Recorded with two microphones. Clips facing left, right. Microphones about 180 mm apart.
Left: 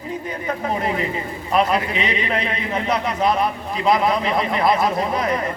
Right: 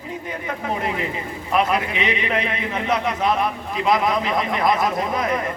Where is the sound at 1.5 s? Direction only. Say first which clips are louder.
Left 1 dB; 35° left (ahead or behind).